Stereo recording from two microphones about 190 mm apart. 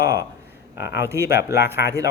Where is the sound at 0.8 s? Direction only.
65° left (ahead or behind).